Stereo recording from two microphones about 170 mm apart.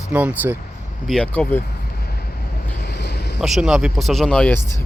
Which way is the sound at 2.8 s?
80° left.